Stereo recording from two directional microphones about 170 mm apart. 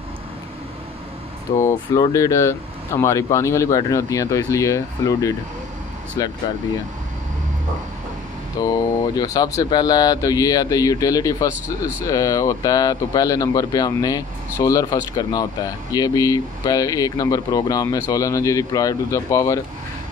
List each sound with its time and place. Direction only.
1.6 s speech: 20° left (ahead or behind)
8.5 s speech: 20° left (ahead or behind)